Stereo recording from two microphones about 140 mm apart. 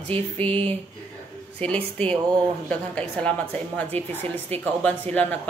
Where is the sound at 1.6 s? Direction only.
10° left (ahead or behind).